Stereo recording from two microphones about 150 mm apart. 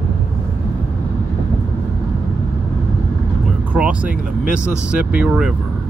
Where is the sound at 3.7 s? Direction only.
10° right (ahead or behind).